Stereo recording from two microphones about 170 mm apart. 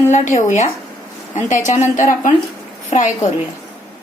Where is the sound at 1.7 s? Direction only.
45° left (ahead or behind).